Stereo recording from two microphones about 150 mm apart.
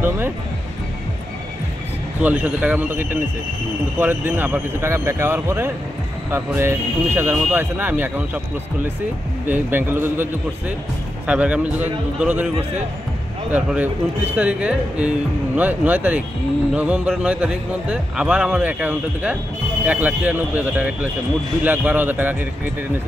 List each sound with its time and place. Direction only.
2.2 s a man's voice: 10° right (ahead or behind)
9.5 s a man's voice: 15° right (ahead or behind)
11.2 s a man's voice: 10° right (ahead or behind)
13.5 s a man's voice: 10° right (ahead or behind)